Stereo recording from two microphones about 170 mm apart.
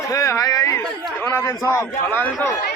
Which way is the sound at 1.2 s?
15° left (ahead or behind).